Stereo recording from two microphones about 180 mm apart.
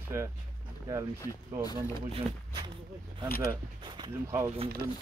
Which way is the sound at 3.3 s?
55° left (ahead or behind).